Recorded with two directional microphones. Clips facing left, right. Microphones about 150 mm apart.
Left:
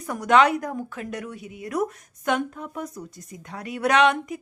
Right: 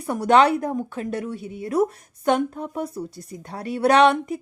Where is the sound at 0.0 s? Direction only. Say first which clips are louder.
Right 2 dB; 30° right (ahead or behind).